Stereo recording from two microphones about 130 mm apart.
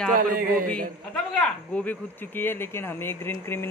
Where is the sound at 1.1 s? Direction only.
5° left (ahead or behind).